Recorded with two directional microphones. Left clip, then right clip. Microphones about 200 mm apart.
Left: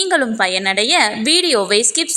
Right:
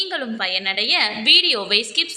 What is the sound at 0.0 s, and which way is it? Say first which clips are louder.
A woman's voice: left 8 dB; 45° left (ahead or behind).